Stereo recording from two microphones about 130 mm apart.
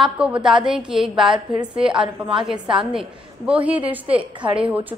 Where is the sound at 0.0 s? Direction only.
5° right (ahead or behind).